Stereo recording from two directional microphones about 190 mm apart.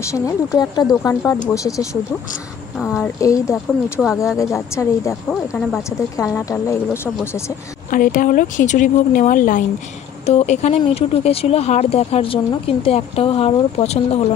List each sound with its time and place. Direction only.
0.0 s speech: 20° left (ahead or behind)
3.2 s speech: 15° left (ahead or behind)
7.9 s speech: 45° left (ahead or behind)